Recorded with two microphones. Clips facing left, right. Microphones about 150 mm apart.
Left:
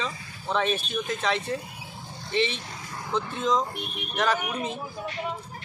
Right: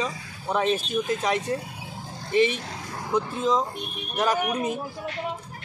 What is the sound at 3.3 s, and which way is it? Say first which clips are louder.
Speech: right 2 dB; 5° right (ahead or behind).